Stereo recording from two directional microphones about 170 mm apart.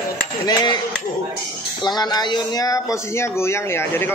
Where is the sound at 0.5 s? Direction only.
25° left (ahead or behind).